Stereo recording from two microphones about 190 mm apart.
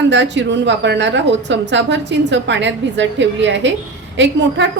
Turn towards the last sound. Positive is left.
turn(degrees=-75)  # may be behind; listen again after turning